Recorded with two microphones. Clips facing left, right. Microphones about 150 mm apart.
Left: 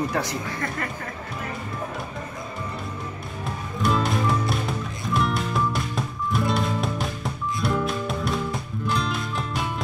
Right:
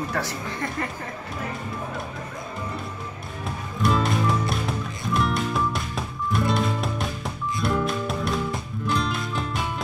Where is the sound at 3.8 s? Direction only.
Centre (ahead or behind).